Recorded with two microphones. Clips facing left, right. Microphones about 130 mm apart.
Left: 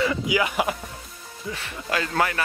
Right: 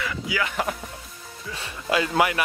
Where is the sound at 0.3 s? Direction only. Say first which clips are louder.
Even; 15° left (ahead or behind).